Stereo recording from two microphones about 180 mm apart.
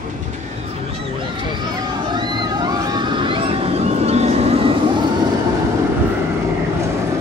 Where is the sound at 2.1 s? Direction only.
25° right (ahead or behind).